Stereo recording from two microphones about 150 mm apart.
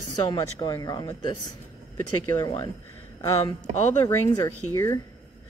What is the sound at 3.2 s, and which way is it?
Speech, 20° left (ahead or behind).